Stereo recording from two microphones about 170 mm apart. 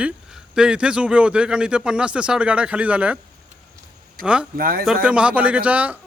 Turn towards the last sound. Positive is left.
turn(degrees=-10)  # may be behind; listen again after turning